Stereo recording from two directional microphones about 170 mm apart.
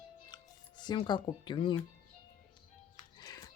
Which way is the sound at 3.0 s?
25° left (ahead or behind).